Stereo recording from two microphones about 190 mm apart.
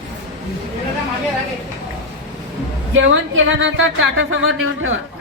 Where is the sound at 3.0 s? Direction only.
90° right.